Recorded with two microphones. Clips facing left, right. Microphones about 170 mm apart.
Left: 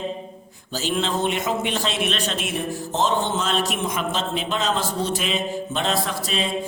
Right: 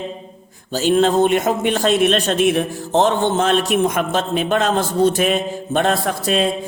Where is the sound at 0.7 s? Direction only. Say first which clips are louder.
Right 9 dB; 50° right (ahead or behind).